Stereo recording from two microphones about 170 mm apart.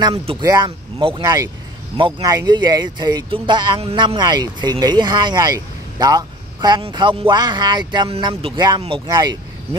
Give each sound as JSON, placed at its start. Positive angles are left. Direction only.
{"t": 0.0, "sound": "speech", "side_deg": -30}